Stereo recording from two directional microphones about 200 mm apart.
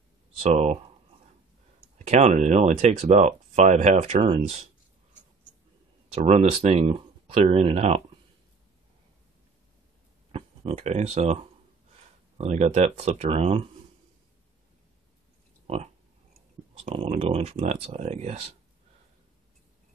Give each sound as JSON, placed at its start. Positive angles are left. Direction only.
{"t": 0.4, "sound": "speech", "side_deg": -35}
{"t": 2.0, "sound": "speech", "side_deg": -35}
{"t": 6.1, "sound": "speech", "side_deg": -30}
{"t": 10.3, "sound": "speech", "side_deg": -30}
{"t": 12.4, "sound": "speech", "side_deg": -35}
{"t": 15.6, "sound": "a sound", "side_deg": -30}
{"t": 16.8, "sound": "speech", "side_deg": -30}